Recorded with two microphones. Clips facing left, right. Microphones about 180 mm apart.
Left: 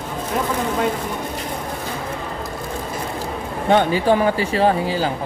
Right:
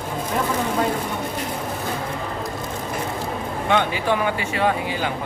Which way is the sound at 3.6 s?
40° left (ahead or behind).